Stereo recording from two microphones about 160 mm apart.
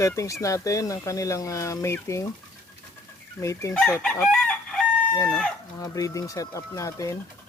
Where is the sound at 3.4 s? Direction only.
20° left (ahead or behind).